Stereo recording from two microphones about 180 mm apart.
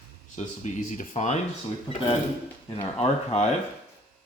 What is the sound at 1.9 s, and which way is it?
Speech, 30° left (ahead or behind).